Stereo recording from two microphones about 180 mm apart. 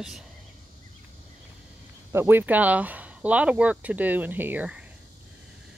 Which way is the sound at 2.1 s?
10° right (ahead or behind).